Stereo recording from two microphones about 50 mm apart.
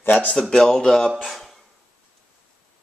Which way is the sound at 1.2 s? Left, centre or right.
Centre.